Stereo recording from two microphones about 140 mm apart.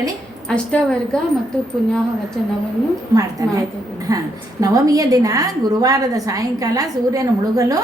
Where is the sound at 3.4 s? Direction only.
25° right (ahead or behind).